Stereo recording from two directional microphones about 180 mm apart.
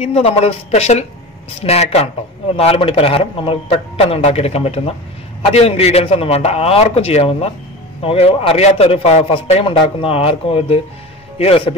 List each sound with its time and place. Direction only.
0.0 s a man's voice: 35° left (ahead or behind)